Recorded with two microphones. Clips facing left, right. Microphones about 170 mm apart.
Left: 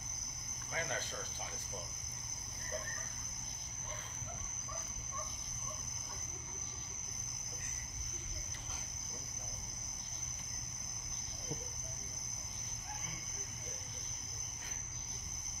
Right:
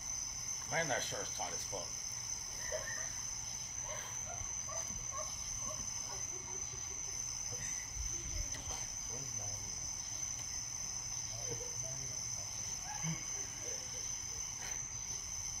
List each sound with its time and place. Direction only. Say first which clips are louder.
0.7 s speech: right 4 dB; 45° right (ahead or behind)